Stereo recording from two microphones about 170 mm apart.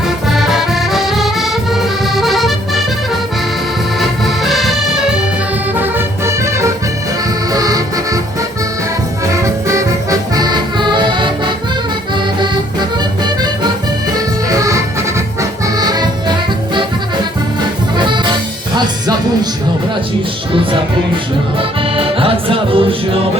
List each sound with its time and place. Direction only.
0.3 s music: centre (ahead or behind)
4.0 s accordion: centre (ahead or behind)
5.8 s music: 15° right (ahead or behind)
9.3 s music: 15° right (ahead or behind)
14.5 s music: 20° right (ahead or behind)
17.9 s music: 25° right (ahead or behind)
21.9 s music: 30° right (ahead or behind)